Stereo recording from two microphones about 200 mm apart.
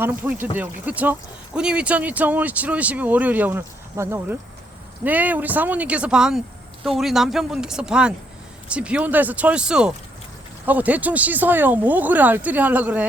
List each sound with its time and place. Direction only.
0.0 s speech: 10° right (ahead or behind)